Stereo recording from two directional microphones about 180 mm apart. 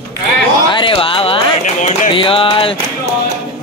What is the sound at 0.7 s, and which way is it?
Speech, 30° left (ahead or behind).